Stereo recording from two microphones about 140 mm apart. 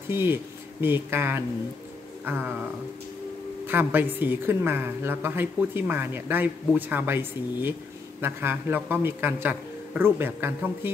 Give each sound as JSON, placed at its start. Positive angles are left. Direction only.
{"t": 0.1, "sound": "speech", "side_deg": -15}
{"t": 2.2, "sound": "a sound", "side_deg": -15}
{"t": 3.6, "sound": "a woman's voice", "side_deg": -15}